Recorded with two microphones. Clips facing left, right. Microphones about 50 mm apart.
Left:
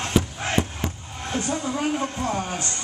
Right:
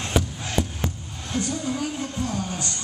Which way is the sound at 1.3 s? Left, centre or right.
Left.